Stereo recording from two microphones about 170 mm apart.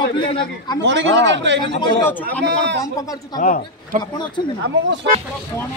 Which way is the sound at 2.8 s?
20° left (ahead or behind).